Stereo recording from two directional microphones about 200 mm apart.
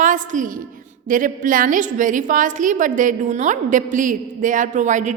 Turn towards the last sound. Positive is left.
turn(degrees=-40)  # may be behind; listen again after turning